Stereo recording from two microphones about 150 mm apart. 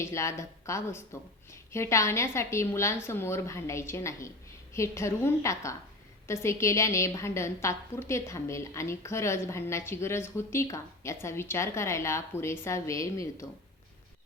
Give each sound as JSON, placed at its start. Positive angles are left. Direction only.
{"t": 0.0, "sound": "a woman's voice", "side_deg": 20}